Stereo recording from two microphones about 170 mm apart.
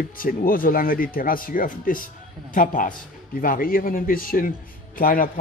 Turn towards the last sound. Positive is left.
turn(degrees=55)  # may be behind; listen again after turning